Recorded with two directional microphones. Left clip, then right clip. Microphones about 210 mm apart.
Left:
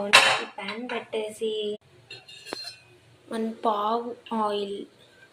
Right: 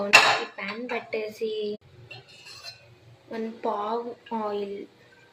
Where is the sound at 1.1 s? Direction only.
5° left (ahead or behind).